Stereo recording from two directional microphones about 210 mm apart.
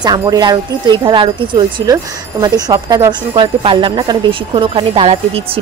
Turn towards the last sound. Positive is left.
turn(degrees=-30)  # may be behind; listen again after turning